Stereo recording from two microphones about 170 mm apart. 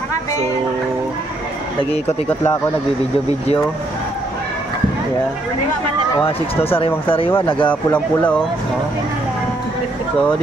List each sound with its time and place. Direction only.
6.2 s speech: 35° left (ahead or behind)
7.6 s speech: 10° left (ahead or behind)